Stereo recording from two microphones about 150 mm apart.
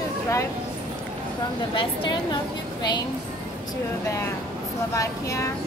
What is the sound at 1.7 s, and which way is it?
Speech, 30° left (ahead or behind).